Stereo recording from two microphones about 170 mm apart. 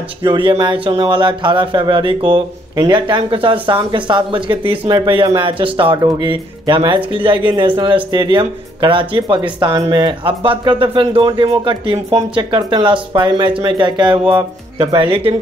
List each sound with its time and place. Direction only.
0.2 s speech: 30° right (ahead or behind)